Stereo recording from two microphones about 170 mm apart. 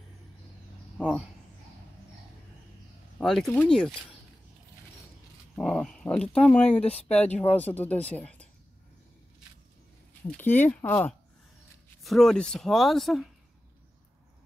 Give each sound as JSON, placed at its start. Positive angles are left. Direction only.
{"t": 0.9, "sound": "speech", "side_deg": 0}
{"t": 3.2, "sound": "speech", "side_deg": 0}
{"t": 5.6, "sound": "speech", "side_deg": 5}
{"t": 7.2, "sound": "speech", "side_deg": 40}
{"t": 7.5, "sound": "speech", "side_deg": 10}
{"t": 10.3, "sound": "speech", "side_deg": 10}
{"t": 12.0, "sound": "speech", "side_deg": 0}